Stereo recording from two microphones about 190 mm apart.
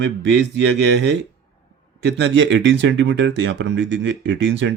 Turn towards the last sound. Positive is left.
turn(degrees=-75)  # may be behind; listen again after turning